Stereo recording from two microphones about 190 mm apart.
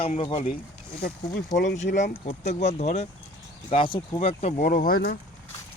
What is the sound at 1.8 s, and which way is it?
Speech, 40° left (ahead or behind).